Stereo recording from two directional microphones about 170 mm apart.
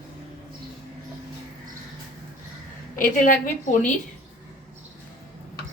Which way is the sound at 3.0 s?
50° left (ahead or behind).